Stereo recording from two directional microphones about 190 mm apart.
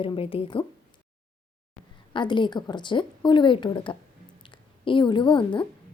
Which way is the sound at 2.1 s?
25° left (ahead or behind).